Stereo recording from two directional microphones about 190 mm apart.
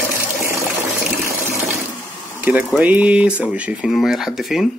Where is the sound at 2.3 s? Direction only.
10° right (ahead or behind).